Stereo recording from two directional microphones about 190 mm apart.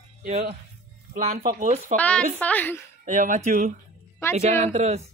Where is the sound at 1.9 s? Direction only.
40° right (ahead or behind).